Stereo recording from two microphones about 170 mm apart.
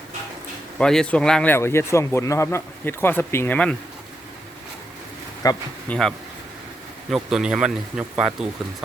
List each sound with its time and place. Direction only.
0.8 s speech: 5° left (ahead or behind)
5.4 s speech: 20° left (ahead or behind)
5.9 s speech: 5° left (ahead or behind)